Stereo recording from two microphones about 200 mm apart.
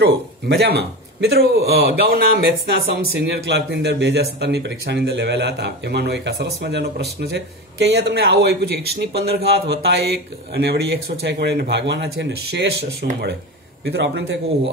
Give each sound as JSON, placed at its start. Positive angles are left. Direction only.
{"t": 0.0, "sound": "a man's voice", "side_deg": -55}
{"t": 13.8, "sound": "speech", "side_deg": -60}